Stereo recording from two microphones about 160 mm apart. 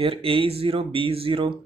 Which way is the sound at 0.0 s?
35° right (ahead or behind).